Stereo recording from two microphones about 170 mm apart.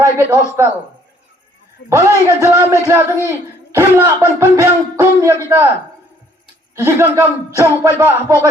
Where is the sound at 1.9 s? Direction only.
15° right (ahead or behind).